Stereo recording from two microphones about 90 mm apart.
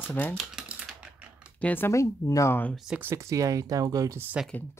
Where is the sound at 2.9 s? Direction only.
30° right (ahead or behind).